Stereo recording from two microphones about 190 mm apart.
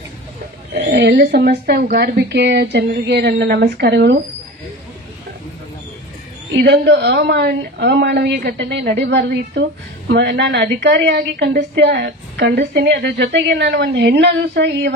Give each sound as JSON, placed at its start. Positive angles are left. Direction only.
{"t": 0.8, "sound": "a woman's voice", "side_deg": -55}
{"t": 6.5, "sound": "a woman's voice", "side_deg": -60}